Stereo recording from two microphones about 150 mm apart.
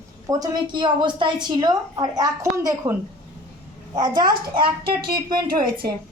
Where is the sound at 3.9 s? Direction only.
30° right (ahead or behind).